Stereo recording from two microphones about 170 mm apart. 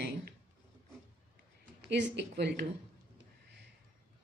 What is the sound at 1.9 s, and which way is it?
Speech, 90° right.